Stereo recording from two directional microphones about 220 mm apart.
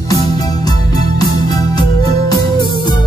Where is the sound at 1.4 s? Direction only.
15° left (ahead or behind).